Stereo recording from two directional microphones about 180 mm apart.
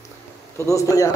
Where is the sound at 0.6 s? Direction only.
15° left (ahead or behind).